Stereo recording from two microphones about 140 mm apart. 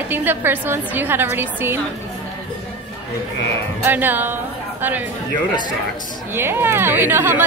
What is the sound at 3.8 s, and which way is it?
Speech, 15° right (ahead or behind).